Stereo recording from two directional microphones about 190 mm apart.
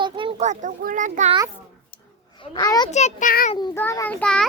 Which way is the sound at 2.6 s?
20° left (ahead or behind).